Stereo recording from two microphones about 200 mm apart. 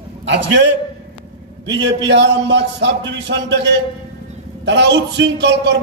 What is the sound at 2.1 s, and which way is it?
A man's voice, 60° right (ahead or behind).